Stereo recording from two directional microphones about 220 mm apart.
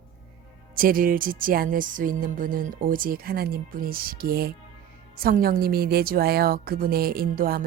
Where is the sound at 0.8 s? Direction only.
40° right (ahead or behind).